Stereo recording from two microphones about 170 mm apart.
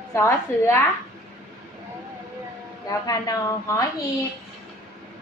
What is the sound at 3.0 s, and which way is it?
Speech, 20° left (ahead or behind).